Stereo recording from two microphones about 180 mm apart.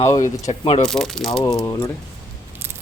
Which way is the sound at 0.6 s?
30° left (ahead or behind).